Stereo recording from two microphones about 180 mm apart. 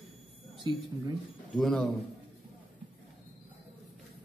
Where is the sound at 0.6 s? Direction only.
25° right (ahead or behind).